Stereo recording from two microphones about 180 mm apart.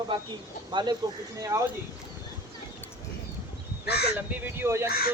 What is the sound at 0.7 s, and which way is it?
Speech, 25° right (ahead or behind).